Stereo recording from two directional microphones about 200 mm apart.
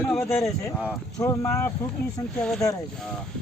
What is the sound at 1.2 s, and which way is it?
Speech, 15° left (ahead or behind).